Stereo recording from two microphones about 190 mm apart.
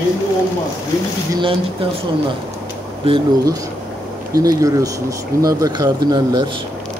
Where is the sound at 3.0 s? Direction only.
30° right (ahead or behind).